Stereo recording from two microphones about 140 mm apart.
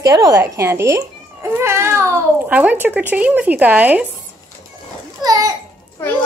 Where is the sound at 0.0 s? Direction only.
25° right (ahead or behind).